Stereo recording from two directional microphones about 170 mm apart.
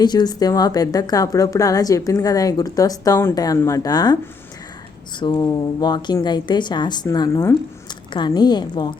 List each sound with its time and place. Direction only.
0.0 s a woman's voice: 25° left (ahead or behind)
5.2 s a woman's voice: 25° left (ahead or behind)